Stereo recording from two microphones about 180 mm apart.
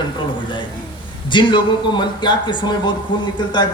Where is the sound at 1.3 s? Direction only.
25° left (ahead or behind).